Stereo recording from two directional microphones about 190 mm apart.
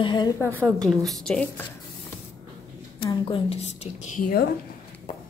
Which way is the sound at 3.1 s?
25° left (ahead or behind).